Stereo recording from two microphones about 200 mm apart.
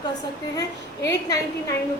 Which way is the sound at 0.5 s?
15° left (ahead or behind).